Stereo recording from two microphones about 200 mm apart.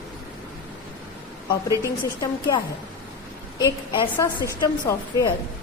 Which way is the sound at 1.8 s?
20° left (ahead or behind).